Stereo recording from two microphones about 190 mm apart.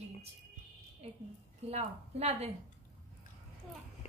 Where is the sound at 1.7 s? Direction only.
35° right (ahead or behind).